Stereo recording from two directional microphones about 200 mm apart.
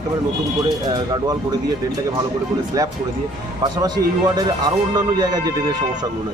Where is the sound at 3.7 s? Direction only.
20° right (ahead or behind).